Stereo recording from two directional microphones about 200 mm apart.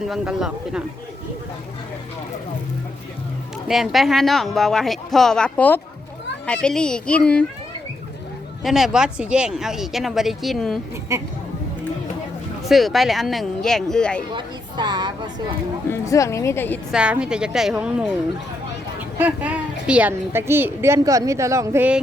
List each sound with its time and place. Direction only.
0.1 s speech: centre (ahead or behind)
3.7 s speech: centre (ahead or behind)
8.6 s speech: centre (ahead or behind)
11.1 s speech: 15° right (ahead or behind)
12.6 s speech: centre (ahead or behind)
14.3 s speech: 20° right (ahead or behind)
15.9 s speech: 15° left (ahead or behind)
16.9 s speech: 5° right (ahead or behind)